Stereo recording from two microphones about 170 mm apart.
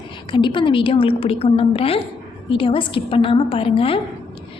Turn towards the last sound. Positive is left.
turn(degrees=30)  # may be behind; listen again after turning